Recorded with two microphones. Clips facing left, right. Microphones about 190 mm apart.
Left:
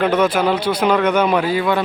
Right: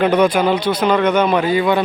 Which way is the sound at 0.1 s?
5° left (ahead or behind).